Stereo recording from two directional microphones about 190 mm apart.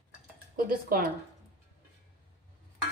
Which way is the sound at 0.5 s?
50° right (ahead or behind).